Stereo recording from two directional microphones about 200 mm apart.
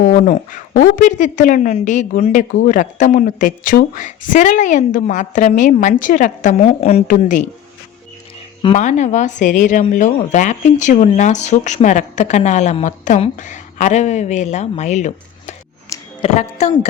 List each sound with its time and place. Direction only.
0.0 s speech: 35° left (ahead or behind)
8.6 s speech: 35° left (ahead or behind)